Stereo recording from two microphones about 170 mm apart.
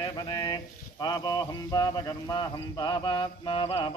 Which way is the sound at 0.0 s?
25° left (ahead or behind).